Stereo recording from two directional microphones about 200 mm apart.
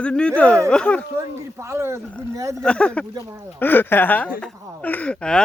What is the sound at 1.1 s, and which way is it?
Speech, 15° right (ahead or behind).